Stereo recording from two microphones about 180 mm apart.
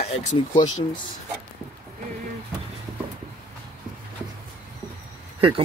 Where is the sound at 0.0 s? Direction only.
40° left (ahead or behind).